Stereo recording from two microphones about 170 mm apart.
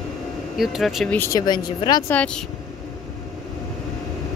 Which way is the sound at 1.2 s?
20° left (ahead or behind).